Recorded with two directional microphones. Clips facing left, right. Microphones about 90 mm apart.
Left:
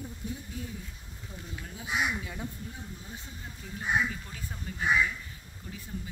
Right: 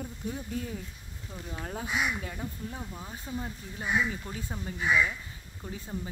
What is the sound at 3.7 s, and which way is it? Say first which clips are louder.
Speech: even; 30° right (ahead or behind).